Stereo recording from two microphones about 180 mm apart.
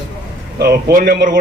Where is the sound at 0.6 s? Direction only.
55° right (ahead or behind).